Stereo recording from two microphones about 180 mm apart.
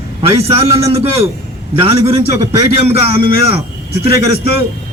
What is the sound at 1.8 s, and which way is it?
A man's voice, 35° right (ahead or behind).